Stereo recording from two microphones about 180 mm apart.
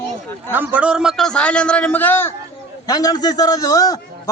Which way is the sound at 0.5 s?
10° right (ahead or behind).